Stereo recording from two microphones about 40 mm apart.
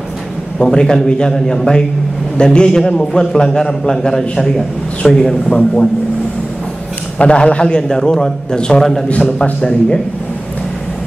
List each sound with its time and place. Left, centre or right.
0.6 s a man's voice: centre
7.2 s a man's voice: left